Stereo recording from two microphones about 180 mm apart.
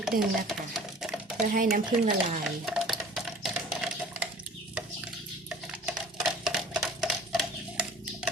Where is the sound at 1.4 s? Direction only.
50° right (ahead or behind).